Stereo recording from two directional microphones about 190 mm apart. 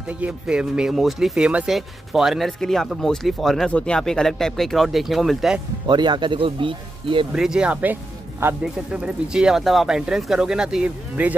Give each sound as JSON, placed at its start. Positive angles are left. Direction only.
{"t": 0.1, "sound": "speech", "side_deg": -5}
{"t": 5.9, "sound": "speech", "side_deg": -25}
{"t": 7.3, "sound": "speech", "side_deg": -5}